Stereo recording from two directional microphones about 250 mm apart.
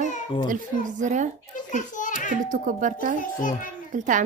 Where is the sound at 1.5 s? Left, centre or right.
Left.